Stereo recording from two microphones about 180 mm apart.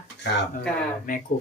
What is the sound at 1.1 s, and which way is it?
Speech, 45° left (ahead or behind).